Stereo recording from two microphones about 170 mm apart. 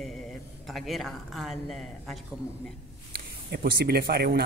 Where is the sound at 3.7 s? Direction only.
65° right (ahead or behind).